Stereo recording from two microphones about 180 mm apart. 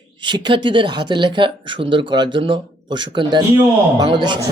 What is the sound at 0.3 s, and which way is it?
Speech, 25° right (ahead or behind).